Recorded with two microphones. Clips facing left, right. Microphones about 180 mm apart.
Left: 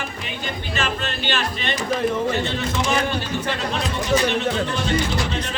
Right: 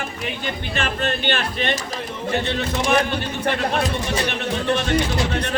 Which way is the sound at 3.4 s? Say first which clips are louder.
Right 4 dB; 55° right (ahead or behind).